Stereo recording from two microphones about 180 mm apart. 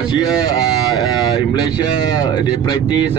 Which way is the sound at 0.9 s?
25° left (ahead or behind).